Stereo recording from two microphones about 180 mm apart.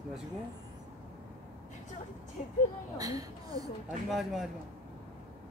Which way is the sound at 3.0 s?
20° right (ahead or behind).